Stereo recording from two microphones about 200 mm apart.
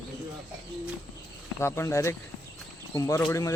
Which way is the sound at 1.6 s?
15° left (ahead or behind).